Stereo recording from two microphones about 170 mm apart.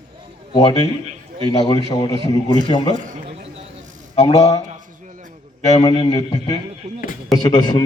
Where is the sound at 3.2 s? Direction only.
35° right (ahead or behind).